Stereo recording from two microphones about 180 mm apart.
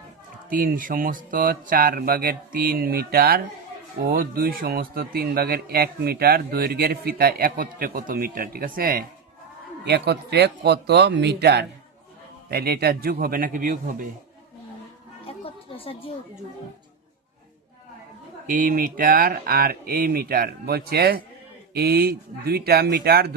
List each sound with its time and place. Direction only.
0.5 s a man's voice: 50° right (ahead or behind)
9.8 s a man's voice: 65° right (ahead or behind); by 14.1 s 50° right (ahead or behind)
15.3 s a sound: 30° left (ahead or behind)
18.4 s a man's voice: 50° right (ahead or behind)